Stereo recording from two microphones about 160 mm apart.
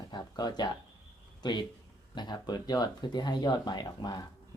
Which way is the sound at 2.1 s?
25° left (ahead or behind).